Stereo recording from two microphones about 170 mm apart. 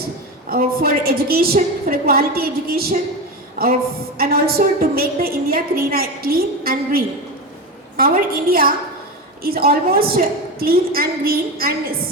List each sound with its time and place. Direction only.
0.5 s a woman's voice: 60° right (ahead or behind)
3.5 s a sound: 60° right (ahead or behind)
4.2 s a woman's voice: 60° right (ahead or behind)